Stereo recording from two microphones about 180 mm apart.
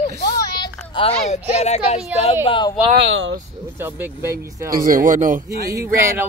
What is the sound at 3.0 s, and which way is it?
Speech, 90° right.